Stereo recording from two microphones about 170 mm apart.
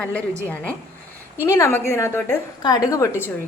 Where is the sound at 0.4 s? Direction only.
10° left (ahead or behind).